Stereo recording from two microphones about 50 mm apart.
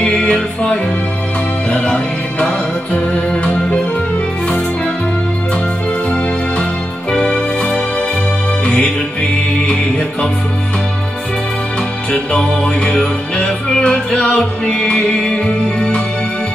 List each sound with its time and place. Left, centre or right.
0.0 s music: left
3.4 s music: left
7.1 s music: centre
12.1 s music: centre